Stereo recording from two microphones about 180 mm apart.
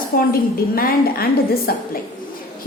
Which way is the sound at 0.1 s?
50° left (ahead or behind).